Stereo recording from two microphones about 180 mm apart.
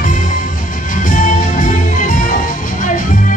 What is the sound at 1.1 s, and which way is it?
Music, 45° left (ahead or behind).